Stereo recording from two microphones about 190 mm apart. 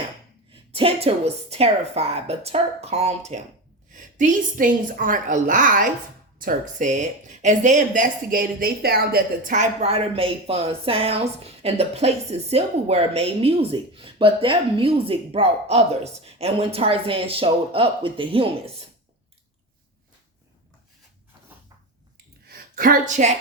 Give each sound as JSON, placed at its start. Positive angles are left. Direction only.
{"t": 0.5, "sound": "a woman's voice", "side_deg": -30}
{"t": 22.4, "sound": "speech", "side_deg": -50}